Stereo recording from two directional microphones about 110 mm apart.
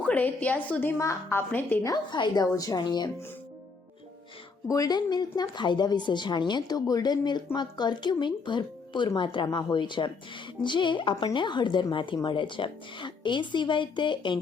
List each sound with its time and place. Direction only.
0.0 s a woman's voice: 15° left (ahead or behind)
1.8 s speech: 40° left (ahead or behind)
4.7 s speech: 35° left (ahead or behind)